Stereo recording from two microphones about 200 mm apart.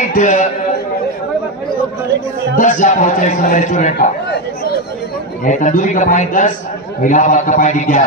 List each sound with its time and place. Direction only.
0.1 s a sound: 40° left (ahead or behind)
2.5 s a man's voice: 40° left (ahead or behind)
5.4 s a man's voice: 40° left (ahead or behind)